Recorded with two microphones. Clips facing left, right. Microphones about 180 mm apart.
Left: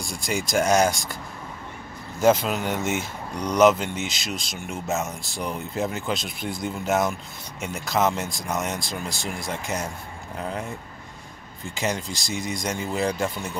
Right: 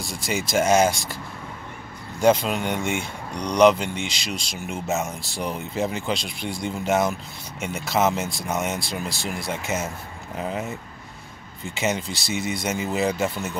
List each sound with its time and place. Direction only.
0.0 s speech: centre (ahead or behind)
2.1 s speech: centre (ahead or behind)